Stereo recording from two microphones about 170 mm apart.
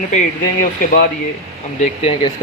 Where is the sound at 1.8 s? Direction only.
35° left (ahead or behind).